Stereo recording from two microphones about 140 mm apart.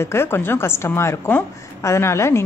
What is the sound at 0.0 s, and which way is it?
A woman's voice, 20° left (ahead or behind).